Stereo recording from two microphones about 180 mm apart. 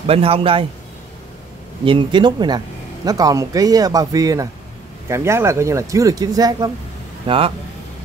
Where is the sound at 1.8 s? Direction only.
25° right (ahead or behind).